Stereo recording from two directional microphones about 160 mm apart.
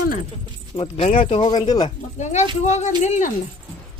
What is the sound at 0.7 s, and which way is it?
Speech, 35° left (ahead or behind).